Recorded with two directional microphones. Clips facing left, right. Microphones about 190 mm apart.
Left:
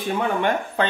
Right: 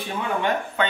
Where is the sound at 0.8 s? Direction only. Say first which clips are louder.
Left 2 dB; 35° left (ahead or behind).